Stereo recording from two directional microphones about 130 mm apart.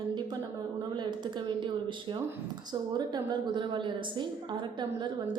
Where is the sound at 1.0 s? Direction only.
35° right (ahead or behind).